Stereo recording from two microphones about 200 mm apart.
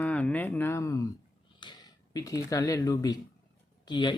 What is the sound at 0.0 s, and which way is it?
Speech, 5° left (ahead or behind).